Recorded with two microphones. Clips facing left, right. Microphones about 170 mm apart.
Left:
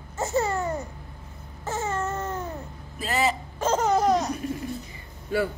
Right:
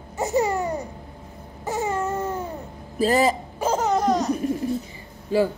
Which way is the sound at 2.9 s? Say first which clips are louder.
Right 6 dB; 40° right (ahead or behind).